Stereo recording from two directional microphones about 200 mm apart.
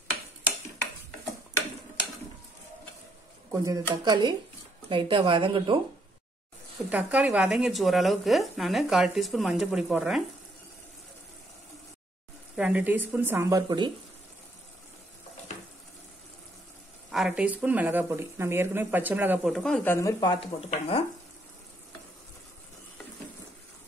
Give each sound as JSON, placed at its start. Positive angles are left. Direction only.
{"t": 3.5, "sound": "speech", "side_deg": -15}
{"t": 6.9, "sound": "speech", "side_deg": -5}
{"t": 12.5, "sound": "speech", "side_deg": -5}
{"t": 17.1, "sound": "speech", "side_deg": -5}
{"t": 19.5, "sound": "speech", "side_deg": 5}